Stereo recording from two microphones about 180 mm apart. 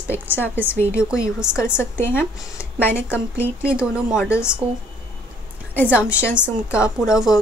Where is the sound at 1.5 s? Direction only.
15° left (ahead or behind).